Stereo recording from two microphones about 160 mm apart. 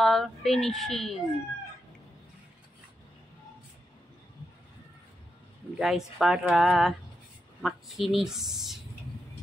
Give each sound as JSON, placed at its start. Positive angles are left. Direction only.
{"t": 0.0, "sound": "speech", "side_deg": 0}
{"t": 5.8, "sound": "speech", "side_deg": -5}